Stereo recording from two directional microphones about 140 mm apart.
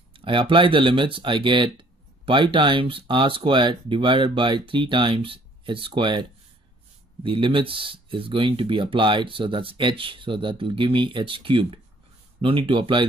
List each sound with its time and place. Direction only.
0.1 s speech: 35° right (ahead or behind)
7.2 s speech: 35° right (ahead or behind)